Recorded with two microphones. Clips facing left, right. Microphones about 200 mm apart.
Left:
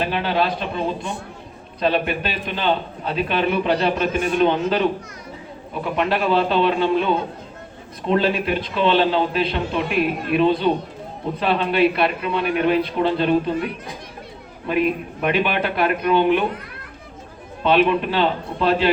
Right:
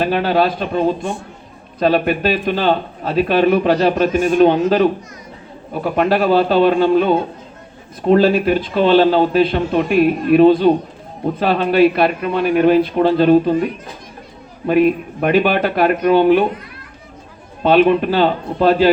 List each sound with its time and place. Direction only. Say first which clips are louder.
0.0 s a man's voice: right 6 dB; 45° right (ahead or behind)
14.7 s a man's voice: right 7 dB; 45° right (ahead or behind)
17.6 s a man's voice: right 5 dB; 45° right (ahead or behind)